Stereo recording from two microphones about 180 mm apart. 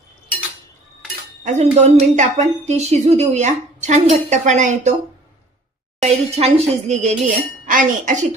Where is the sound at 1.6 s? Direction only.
35° right (ahead or behind).